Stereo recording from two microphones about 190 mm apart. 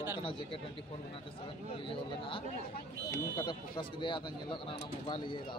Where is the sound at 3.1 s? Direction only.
20° left (ahead or behind).